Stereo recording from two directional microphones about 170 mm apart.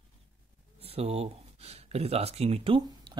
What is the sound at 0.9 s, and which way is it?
Speech, 35° right (ahead or behind).